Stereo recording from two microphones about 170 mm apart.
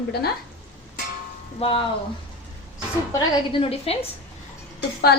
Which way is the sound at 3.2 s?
30° left (ahead or behind).